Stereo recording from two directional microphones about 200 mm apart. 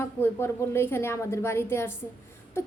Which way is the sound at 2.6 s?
15° left (ahead or behind).